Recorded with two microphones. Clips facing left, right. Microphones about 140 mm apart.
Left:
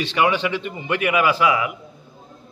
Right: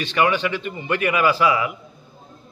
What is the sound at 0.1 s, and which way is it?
A man's voice, 20° left (ahead or behind).